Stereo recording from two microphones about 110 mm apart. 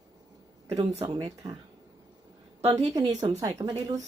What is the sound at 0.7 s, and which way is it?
Speech, 65° right (ahead or behind).